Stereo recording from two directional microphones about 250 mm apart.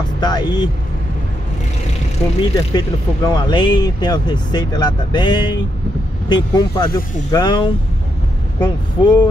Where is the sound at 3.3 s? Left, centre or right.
Centre.